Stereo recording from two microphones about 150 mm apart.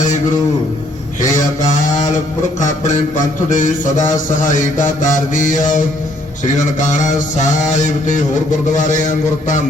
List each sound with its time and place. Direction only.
3.5 s mantra: 55° left (ahead or behind)